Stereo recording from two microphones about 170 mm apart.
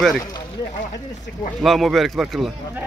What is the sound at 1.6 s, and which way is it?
A man's voice, centre (ahead or behind).